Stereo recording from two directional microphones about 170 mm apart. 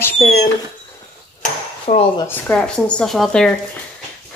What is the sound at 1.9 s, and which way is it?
Speech, 40° left (ahead or behind).